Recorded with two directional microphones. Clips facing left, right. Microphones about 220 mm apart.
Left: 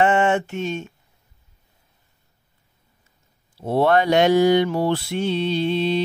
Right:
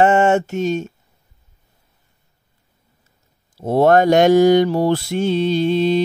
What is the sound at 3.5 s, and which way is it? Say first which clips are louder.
Mantra: right 5 dB; 45° right (ahead or behind).